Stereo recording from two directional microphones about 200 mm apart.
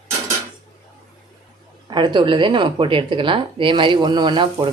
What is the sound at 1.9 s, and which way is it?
Speech, 25° right (ahead or behind).